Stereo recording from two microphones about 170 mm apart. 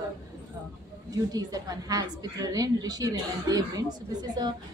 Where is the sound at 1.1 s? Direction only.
20° right (ahead or behind).